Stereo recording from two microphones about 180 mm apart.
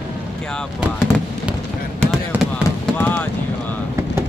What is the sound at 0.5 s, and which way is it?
Speech, 5° left (ahead or behind).